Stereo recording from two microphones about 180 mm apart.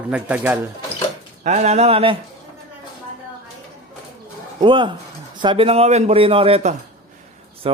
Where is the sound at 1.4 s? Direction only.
40° right (ahead or behind).